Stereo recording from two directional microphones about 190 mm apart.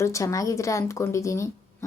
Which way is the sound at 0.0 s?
15° left (ahead or behind).